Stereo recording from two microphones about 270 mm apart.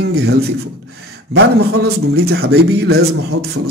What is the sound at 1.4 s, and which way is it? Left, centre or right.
Speech, right.